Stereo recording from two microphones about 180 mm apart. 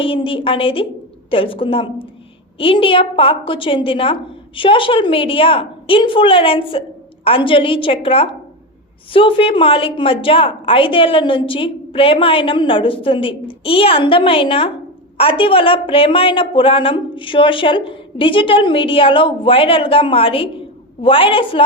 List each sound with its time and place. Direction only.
0.0 s a woman's voice: 30° left (ahead or behind)